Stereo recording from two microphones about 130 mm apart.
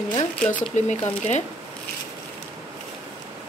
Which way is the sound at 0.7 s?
60° left (ahead or behind).